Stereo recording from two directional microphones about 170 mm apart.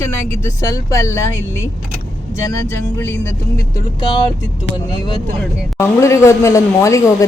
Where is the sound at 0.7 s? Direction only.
20° left (ahead or behind).